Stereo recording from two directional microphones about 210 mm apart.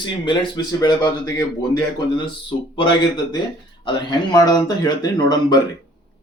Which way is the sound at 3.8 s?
20° left (ahead or behind).